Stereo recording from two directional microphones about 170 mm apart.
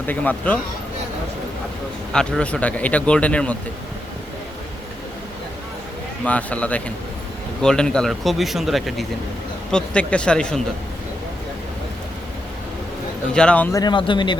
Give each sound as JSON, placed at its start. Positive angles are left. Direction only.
{"t": 0.0, "sound": "speech", "side_deg": 10}
{"t": 2.1, "sound": "speech", "side_deg": 5}
{"t": 6.2, "sound": "speech", "side_deg": 10}
{"t": 13.3, "sound": "speech", "side_deg": 5}
{"t": 13.7, "sound": "speech", "side_deg": 25}